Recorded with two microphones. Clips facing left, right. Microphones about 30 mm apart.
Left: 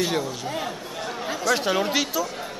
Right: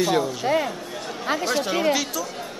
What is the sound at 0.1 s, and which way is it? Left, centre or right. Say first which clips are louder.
Speech: right 4 dB; centre.